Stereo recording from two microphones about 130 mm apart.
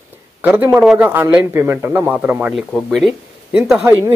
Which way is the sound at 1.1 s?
15° right (ahead or behind).